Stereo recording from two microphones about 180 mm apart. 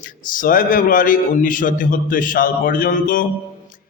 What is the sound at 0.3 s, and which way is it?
A man's voice, 50° left (ahead or behind).